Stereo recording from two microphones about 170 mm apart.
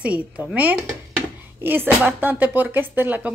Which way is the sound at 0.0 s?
10° right (ahead or behind).